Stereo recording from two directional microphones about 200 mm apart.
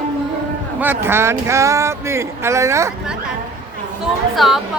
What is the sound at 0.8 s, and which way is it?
Speech, 10° right (ahead or behind).